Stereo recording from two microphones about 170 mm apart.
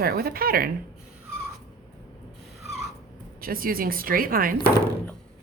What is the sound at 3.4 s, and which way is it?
A woman's voice, 60° right (ahead or behind).